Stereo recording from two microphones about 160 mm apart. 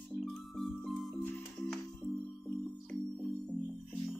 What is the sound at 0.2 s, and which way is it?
Music, centre (ahead or behind).